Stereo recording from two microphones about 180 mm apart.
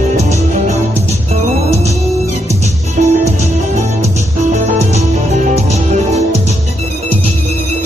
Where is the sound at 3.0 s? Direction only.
50° right (ahead or behind).